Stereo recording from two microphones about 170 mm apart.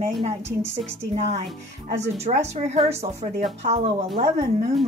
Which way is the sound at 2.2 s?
40° right (ahead or behind).